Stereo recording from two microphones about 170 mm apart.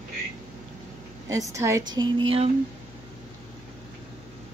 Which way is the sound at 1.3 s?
20° right (ahead or behind).